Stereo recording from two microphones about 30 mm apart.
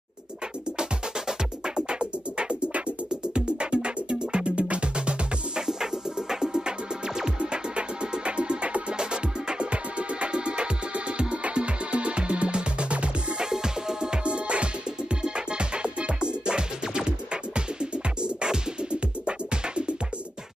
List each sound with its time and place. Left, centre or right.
1.8 s music: right
5.7 s music: centre
7.3 s music: right
8.9 s music: right
13.5 s music: centre
14.1 s music: right